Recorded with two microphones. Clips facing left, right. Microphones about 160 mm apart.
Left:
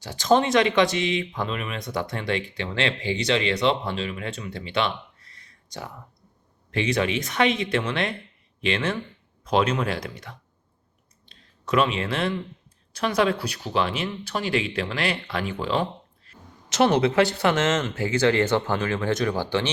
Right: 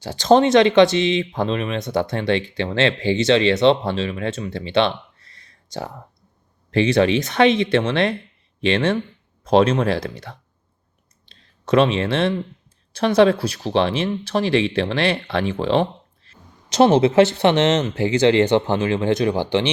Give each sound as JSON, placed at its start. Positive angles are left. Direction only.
{"t": 0.0, "sound": "speech", "side_deg": -30}
{"t": 5.4, "sound": "a sound", "side_deg": -30}
{"t": 6.7, "sound": "speech", "side_deg": -35}
{"t": 11.7, "sound": "speech", "side_deg": -30}